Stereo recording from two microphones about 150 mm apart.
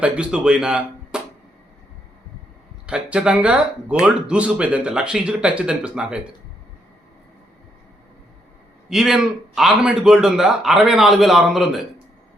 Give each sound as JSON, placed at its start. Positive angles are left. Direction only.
{"t": 0.0, "sound": "speech", "side_deg": -5}
{"t": 2.8, "sound": "speech", "side_deg": -5}
{"t": 8.9, "sound": "speech", "side_deg": -5}